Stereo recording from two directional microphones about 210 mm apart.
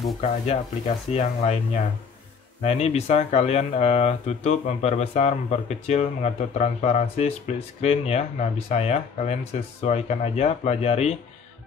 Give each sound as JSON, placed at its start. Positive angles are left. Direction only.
{"t": 0.2, "sound": "speech", "side_deg": 35}
{"t": 2.6, "sound": "speech", "side_deg": 30}